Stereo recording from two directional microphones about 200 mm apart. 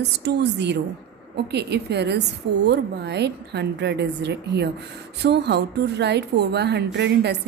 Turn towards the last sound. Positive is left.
turn(degrees=-55)  # may be behind; listen again after turning